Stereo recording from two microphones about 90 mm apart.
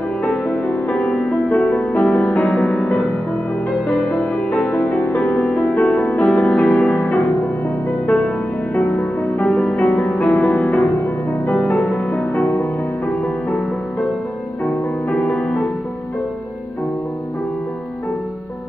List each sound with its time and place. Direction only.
0.2 s music: 10° left (ahead or behind)
8.7 s music: 20° left (ahead or behind)
14.7 s music: 15° left (ahead or behind)